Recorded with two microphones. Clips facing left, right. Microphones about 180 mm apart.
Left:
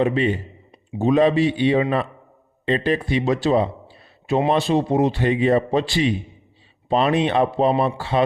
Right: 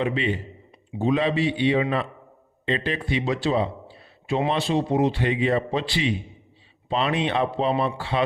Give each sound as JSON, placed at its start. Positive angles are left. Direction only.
{"t": 0.0, "sound": "a man's voice", "side_deg": 40}